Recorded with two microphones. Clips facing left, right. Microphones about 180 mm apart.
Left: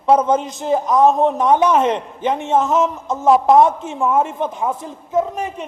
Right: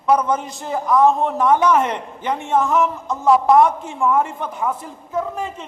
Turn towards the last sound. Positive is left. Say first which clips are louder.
# left 4 dB
turn(degrees=20)  # may be behind; listen again after turning